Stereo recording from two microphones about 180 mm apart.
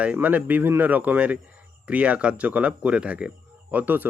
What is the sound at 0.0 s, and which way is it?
Speech, 10° right (ahead or behind).